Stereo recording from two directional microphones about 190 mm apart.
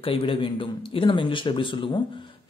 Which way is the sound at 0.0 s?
30° left (ahead or behind).